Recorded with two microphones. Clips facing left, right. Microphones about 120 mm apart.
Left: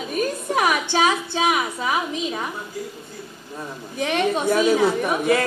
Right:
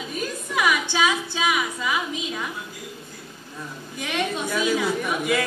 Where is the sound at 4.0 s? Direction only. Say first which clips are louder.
Left 6 dB; 35° left (ahead or behind).